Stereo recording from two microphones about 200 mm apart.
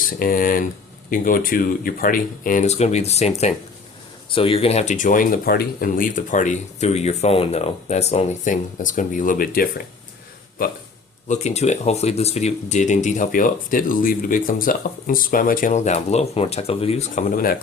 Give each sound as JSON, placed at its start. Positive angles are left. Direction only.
{"t": 0.2, "sound": "speech", "side_deg": 45}
{"t": 11.3, "sound": "speech", "side_deg": 35}